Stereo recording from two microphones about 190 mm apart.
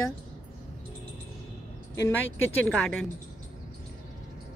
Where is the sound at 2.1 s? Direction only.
10° left (ahead or behind).